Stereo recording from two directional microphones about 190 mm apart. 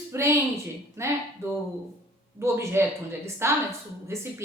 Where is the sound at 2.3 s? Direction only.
15° right (ahead or behind).